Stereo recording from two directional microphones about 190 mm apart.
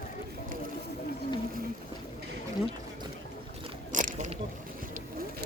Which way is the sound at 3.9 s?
40° right (ahead or behind).